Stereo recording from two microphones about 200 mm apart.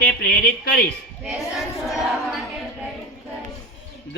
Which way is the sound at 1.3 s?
Centre (ahead or behind).